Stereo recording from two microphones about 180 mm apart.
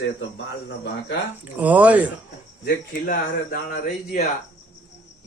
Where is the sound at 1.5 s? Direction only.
10° right (ahead or behind).